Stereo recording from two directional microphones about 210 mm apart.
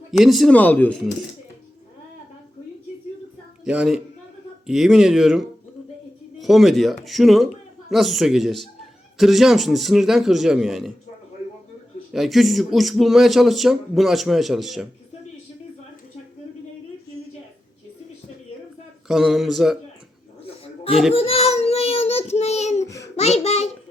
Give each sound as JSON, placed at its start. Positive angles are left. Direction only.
{"t": 0.1, "sound": "speech", "side_deg": 0}
{"t": 3.6, "sound": "a woman's voice", "side_deg": -5}
{"t": 12.1, "sound": "speech", "side_deg": 0}
{"t": 19.0, "sound": "speech", "side_deg": 0}
{"t": 21.1, "sound": "child singing", "side_deg": 25}
{"t": 23.1, "sound": "a sound", "side_deg": 30}